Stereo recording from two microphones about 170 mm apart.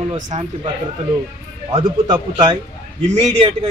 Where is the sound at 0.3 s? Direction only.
40° right (ahead or behind).